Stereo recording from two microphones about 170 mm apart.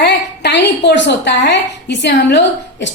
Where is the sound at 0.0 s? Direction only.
80° left.